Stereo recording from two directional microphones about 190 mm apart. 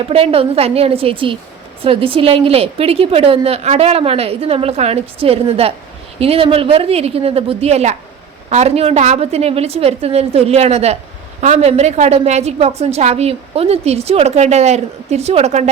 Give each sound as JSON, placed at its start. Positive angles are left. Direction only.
{"t": 0.0, "sound": "a woman's voice", "side_deg": -30}